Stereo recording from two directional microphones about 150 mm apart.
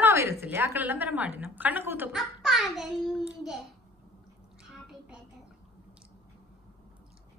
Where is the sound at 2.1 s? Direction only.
Centre (ahead or behind).